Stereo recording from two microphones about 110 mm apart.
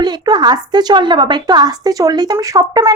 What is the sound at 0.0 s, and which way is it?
Speech, 40° right (ahead or behind).